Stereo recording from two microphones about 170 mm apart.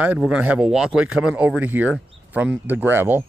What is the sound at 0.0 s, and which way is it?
A man's voice, 5° right (ahead or behind).